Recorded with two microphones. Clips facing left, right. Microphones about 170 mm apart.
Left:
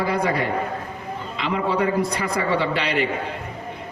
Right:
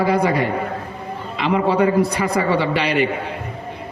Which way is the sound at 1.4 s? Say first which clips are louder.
Right 5 dB; 65° right (ahead or behind).